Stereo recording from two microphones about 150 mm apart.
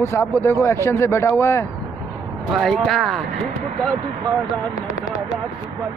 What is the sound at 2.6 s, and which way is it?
Speech, centre (ahead or behind).